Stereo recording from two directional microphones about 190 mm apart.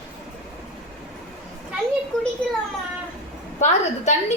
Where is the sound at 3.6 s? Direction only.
35° left (ahead or behind).